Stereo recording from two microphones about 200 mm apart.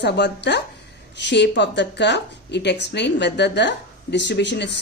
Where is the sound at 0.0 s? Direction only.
60° left (ahead or behind).